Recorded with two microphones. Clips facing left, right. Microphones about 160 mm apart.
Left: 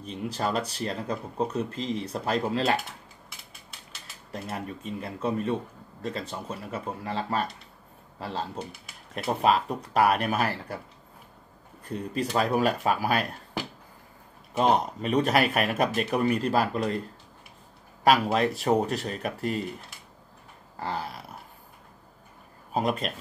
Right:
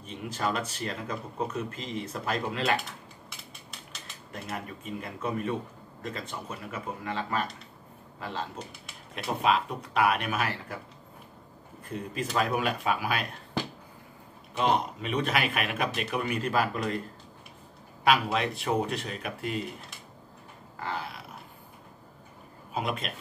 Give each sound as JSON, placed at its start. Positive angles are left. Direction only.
{"t": 0.0, "sound": "speech", "side_deg": 35}
{"t": 4.3, "sound": "speech", "side_deg": 30}
{"t": 11.9, "sound": "speech", "side_deg": 35}
{"t": 14.6, "sound": "speech", "side_deg": 40}
{"t": 18.0, "sound": "speech", "side_deg": 40}
{"t": 20.8, "sound": "a sound", "side_deg": 35}
{"t": 22.7, "sound": "speech", "side_deg": 40}